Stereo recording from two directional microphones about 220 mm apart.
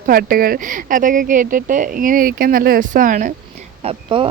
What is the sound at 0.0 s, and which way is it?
Speech, 40° right (ahead or behind).